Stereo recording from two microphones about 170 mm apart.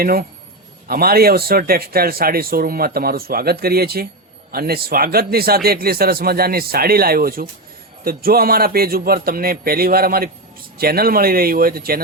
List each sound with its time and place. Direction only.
0.0 s a man's voice: 60° right (ahead or behind)